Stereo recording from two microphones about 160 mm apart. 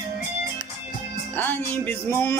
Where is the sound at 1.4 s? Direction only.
15° left (ahead or behind).